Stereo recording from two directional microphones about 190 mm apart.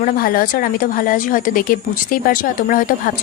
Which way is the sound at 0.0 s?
50° left (ahead or behind).